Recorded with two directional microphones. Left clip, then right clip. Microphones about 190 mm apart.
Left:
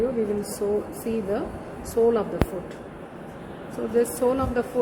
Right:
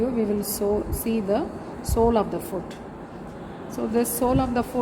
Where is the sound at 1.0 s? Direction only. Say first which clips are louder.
Right 2 dB; 60° right (ahead or behind).